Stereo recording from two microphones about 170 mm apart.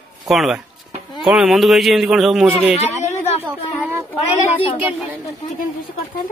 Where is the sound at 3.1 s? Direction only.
40° left (ahead or behind).